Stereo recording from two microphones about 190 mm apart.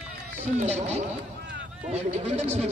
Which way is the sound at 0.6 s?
35° right (ahead or behind).